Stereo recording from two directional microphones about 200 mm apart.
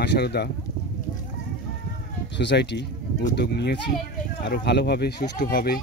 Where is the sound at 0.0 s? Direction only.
55° left (ahead or behind).